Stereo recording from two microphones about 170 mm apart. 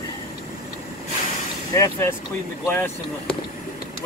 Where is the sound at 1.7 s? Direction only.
15° left (ahead or behind).